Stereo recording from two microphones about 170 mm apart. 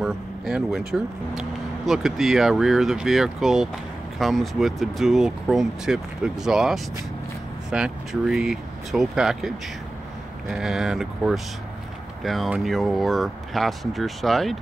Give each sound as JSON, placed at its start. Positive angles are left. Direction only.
{"t": 0.0, "sound": "speech", "side_deg": 0}
{"t": 10.5, "sound": "speech", "side_deg": 0}